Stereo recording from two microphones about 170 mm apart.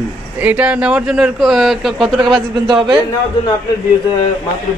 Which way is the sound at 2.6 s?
30° right (ahead or behind).